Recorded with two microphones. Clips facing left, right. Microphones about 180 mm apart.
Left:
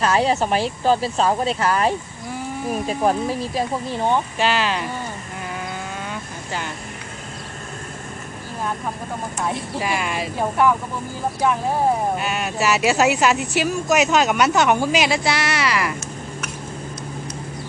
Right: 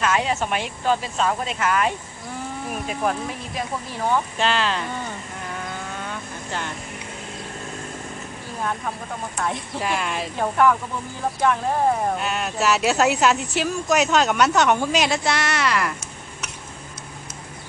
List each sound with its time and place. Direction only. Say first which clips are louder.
0.0 s speech: left 4 dB; 35° left (ahead or behind)
4.4 s speech: left 2 dB; 10° left (ahead or behind)
9.4 s speech: left 1 dB; 5° left (ahead or behind)
12.2 s speech: left 1 dB; 5° left (ahead or behind)